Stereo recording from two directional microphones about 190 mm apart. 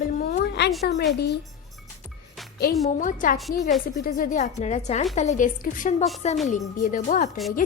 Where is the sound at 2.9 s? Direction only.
45° left (ahead or behind).